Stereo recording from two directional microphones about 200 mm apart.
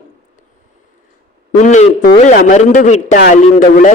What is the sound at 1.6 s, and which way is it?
A man's voice, 40° left (ahead or behind).